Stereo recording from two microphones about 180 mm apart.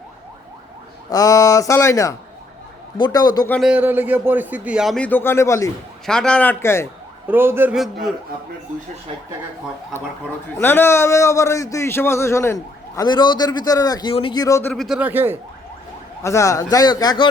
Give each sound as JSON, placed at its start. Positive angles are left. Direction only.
{"t": 1.1, "sound": "a man's voice", "side_deg": 20}
{"t": 3.7, "sound": "speech", "side_deg": -10}
{"t": 6.1, "sound": "a man's voice", "side_deg": 5}
{"t": 7.3, "sound": "a man's voice", "side_deg": -10}
{"t": 10.6, "sound": "a man's voice", "side_deg": 10}
{"t": 14.7, "sound": "a man's voice", "side_deg": 0}
{"t": 16.2, "sound": "speech", "side_deg": 15}